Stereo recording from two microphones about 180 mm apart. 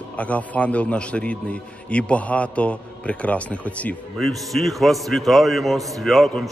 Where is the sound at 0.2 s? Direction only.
10° left (ahead or behind).